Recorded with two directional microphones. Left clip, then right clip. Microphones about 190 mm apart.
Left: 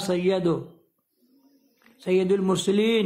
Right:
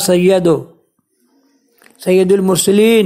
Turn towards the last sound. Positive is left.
turn(degrees=-30)  # may be behind; listen again after turning